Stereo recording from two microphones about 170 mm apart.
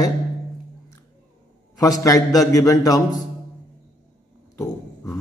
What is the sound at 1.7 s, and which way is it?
A man's voice, 20° left (ahead or behind).